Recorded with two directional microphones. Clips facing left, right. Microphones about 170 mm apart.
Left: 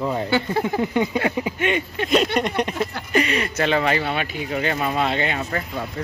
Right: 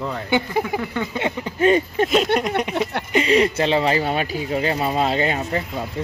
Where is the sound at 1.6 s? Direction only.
35° right (ahead or behind).